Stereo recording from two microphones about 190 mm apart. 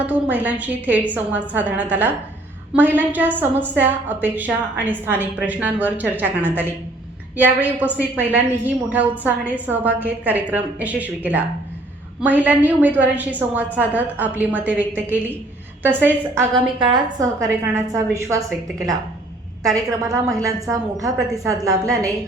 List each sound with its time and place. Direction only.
0.0 s a woman's voice: 10° right (ahead or behind)
19.6 s a woman's voice: 15° right (ahead or behind)